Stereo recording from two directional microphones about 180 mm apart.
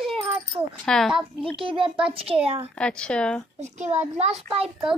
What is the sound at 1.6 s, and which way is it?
Speech, 30° right (ahead or behind).